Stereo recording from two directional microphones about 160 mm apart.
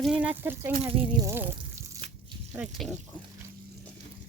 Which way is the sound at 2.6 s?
Centre (ahead or behind).